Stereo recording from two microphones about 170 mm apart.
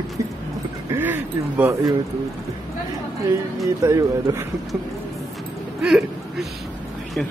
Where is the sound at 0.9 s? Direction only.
10° right (ahead or behind).